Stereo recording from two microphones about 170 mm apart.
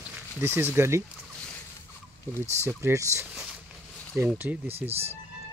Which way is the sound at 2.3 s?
15° right (ahead or behind).